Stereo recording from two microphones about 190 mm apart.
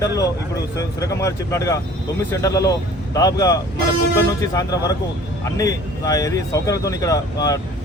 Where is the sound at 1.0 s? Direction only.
15° left (ahead or behind).